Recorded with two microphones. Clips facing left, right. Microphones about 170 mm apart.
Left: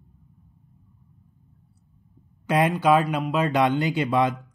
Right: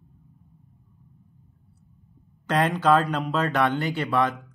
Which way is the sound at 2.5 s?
15° left (ahead or behind).